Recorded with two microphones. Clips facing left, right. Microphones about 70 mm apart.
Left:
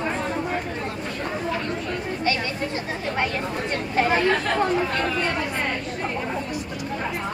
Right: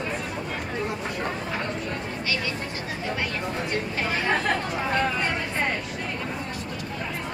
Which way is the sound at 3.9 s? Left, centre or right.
Left.